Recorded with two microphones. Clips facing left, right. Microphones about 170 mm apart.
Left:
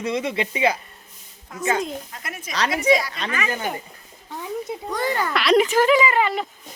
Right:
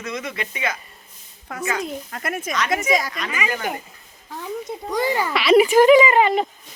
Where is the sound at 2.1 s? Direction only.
55° right (ahead or behind).